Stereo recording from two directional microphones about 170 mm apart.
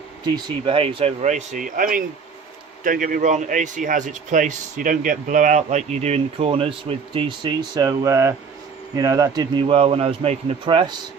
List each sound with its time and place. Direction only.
0.4 s a man's voice: 30° right (ahead or behind)